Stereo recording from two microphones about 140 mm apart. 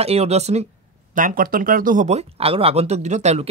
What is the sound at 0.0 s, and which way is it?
Speech, 45° right (ahead or behind).